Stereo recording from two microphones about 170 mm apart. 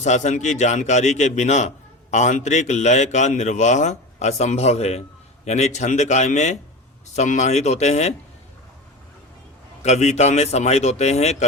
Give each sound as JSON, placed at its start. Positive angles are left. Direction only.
{"t": 0.0, "sound": "a man's voice", "side_deg": 45}
{"t": 9.8, "sound": "speech", "side_deg": 40}